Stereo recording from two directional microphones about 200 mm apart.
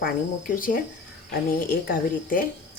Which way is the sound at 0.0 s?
45° left (ahead or behind).